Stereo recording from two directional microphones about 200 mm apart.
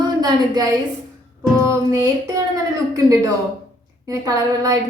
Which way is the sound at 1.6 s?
15° right (ahead or behind).